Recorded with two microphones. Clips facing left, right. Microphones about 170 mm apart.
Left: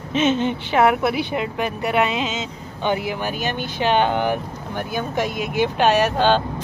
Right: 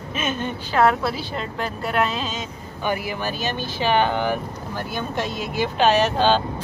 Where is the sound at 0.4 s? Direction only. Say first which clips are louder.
Left 2 dB; 20° left (ahead or behind).